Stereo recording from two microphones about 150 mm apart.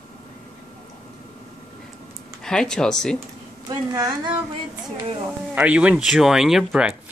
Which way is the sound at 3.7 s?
25° right (ahead or behind).